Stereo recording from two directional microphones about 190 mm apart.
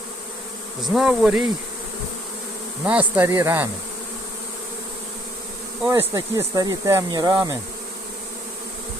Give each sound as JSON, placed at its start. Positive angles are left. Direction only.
{"t": 0.8, "sound": "insect", "side_deg": 0}
{"t": 2.8, "sound": "speech", "side_deg": -10}
{"t": 5.8, "sound": "speech", "side_deg": -20}